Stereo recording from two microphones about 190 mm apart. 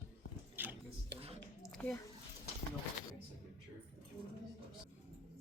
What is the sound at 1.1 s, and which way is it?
Whispering, 60° right (ahead or behind).